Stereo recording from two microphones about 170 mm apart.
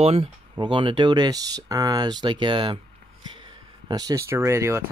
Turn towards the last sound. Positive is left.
turn(degrees=-15)  # may be behind; listen again after turning